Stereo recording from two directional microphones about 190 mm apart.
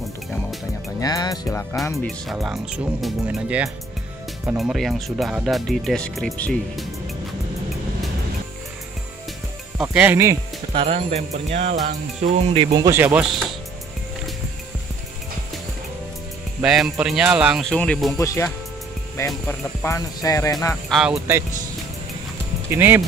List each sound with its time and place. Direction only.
1.0 s speech: 20° left (ahead or behind)
2.3 s speech: 5° right (ahead or behind)
9.8 s speech: 5° right (ahead or behind)
10.7 s speech: 30° right (ahead or behind); by 13.5 s centre (ahead or behind)
16.6 s speech: centre (ahead or behind); by 20.5 s 15° left (ahead or behind)
20.9 s speech: centre (ahead or behind)
22.7 s speech: 10° right (ahead or behind)